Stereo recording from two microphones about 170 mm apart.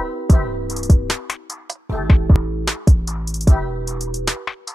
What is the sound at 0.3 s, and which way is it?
Music, centre (ahead or behind).